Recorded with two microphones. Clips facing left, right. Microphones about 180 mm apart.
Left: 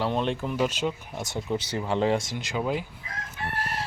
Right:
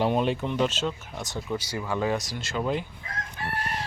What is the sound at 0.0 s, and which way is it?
Speech, 10° right (ahead or behind).